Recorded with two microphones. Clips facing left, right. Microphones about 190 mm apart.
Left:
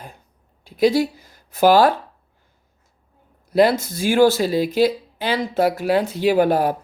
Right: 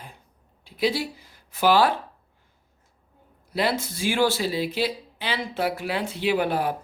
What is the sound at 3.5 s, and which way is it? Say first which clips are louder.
Speech: left 9 dB; 45° left (ahead or behind).